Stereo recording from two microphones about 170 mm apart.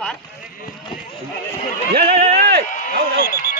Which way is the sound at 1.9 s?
70° right (ahead or behind).